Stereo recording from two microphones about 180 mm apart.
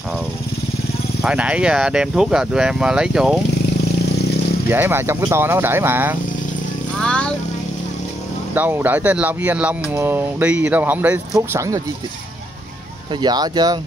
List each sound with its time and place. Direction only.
1.2 s speech: 5° right (ahead or behind)
4.6 s speech: 10° right (ahead or behind)
7.0 s vehicle: 5° left (ahead or behind)
8.5 s speech: 10° right (ahead or behind)
13.1 s speech: 25° right (ahead or behind)